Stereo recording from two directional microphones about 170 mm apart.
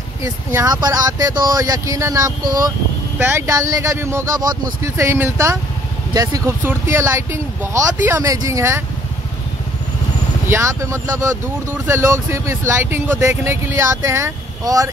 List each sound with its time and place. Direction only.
0.2 s speech: 20° right (ahead or behind)
10.5 s speech: 15° right (ahead or behind)